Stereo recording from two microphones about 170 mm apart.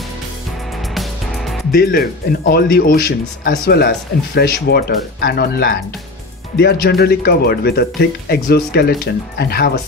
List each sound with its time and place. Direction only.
0.9 s music: centre (ahead or behind)
1.7 s a man's voice: 60° left (ahead or behind)